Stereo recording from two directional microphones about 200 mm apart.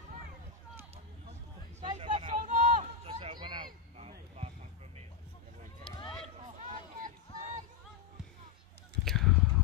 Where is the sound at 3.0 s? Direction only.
30° right (ahead or behind).